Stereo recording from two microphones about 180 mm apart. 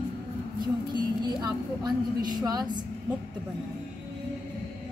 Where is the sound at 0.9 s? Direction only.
25° right (ahead or behind).